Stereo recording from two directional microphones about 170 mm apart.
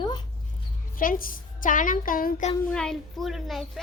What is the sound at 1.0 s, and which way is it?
A woman's voice, 55° left (ahead or behind).